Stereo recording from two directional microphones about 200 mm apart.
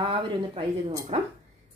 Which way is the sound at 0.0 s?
25° right (ahead or behind).